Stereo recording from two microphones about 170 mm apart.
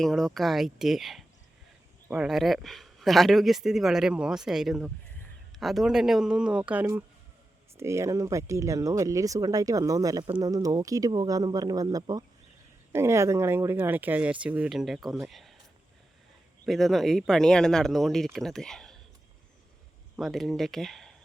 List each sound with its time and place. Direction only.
0.0 s speech: centre (ahead or behind)
16.6 s speech: centre (ahead or behind)
20.1 s speech: centre (ahead or behind)